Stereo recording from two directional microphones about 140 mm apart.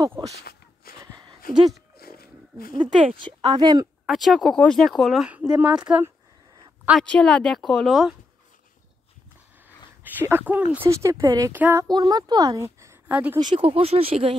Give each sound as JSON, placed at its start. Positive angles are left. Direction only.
{"t": 0.4, "sound": "a sound", "side_deg": 90}
{"t": 1.0, "sound": "a sound", "side_deg": -30}
{"t": 2.0, "sound": "roaring cats", "side_deg": 90}
{"t": 2.7, "sound": "a sound", "side_deg": -35}
{"t": 3.2, "sound": "speech", "side_deg": -35}
{"t": 4.0, "sound": "speech", "side_deg": 0}
{"t": 6.9, "sound": "speech", "side_deg": 5}
{"t": 10.0, "sound": "speech", "side_deg": -15}
{"t": 13.1, "sound": "speech", "side_deg": -10}
{"t": 13.4, "sound": "speech", "side_deg": -35}